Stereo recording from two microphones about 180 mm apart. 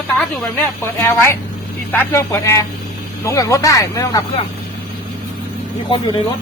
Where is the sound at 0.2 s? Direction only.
10° left (ahead or behind).